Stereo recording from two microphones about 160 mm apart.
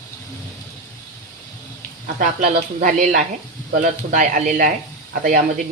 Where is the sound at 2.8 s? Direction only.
60° right (ahead or behind).